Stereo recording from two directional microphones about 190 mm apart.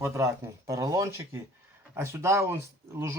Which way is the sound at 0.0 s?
15° right (ahead or behind).